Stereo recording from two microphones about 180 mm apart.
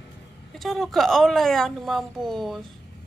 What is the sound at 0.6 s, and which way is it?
A woman's voice, centre (ahead or behind).